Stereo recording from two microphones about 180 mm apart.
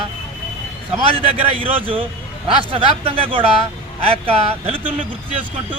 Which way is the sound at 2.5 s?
30° right (ahead or behind).